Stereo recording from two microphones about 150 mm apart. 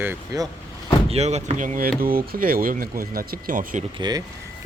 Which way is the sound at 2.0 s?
75° right (ahead or behind).